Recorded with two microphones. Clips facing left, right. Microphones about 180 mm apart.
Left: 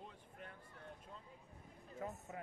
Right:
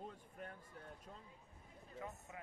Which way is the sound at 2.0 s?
35° left (ahead or behind).